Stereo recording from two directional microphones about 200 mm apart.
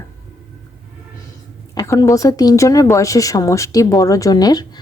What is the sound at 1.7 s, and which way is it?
Speech, 15° left (ahead or behind).